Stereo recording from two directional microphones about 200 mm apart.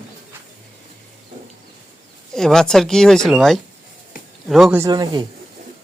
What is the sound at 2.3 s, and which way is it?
Speech, centre (ahead or behind).